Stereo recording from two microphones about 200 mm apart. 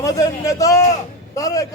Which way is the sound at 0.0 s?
15° left (ahead or behind).